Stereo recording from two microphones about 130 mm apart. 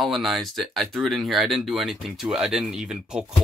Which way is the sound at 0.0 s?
Centre (ahead or behind).